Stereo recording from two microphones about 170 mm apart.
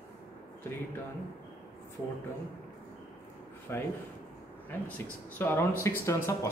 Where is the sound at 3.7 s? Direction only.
15° left (ahead or behind).